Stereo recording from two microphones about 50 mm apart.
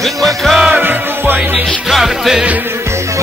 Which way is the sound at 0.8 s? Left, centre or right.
Right.